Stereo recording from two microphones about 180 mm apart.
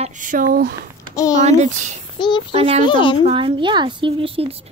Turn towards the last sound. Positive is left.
turn(degrees=-30)  # may be behind; listen again after turning